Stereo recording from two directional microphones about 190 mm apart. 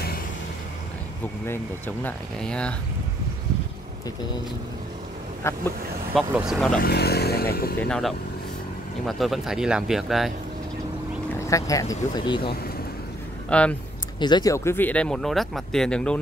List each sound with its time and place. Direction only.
2.0 s speech: 5° left (ahead or behind)
5.4 s speech: 15° left (ahead or behind)
6.1 s speech: centre (ahead or behind)
6.8 s speech: 55° left (ahead or behind)
9.0 s speech: centre (ahead or behind)
11.4 s speech: 15° left (ahead or behind)
13.5 s speech: 5° left (ahead or behind)
14.2 s speech: 20° left (ahead or behind); by 16.2 s 5° left (ahead or behind)